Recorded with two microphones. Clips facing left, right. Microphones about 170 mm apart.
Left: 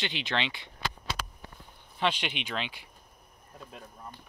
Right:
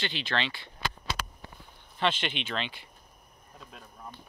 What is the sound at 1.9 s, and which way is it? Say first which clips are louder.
Speech: right 1 dB; 10° left (ahead or behind).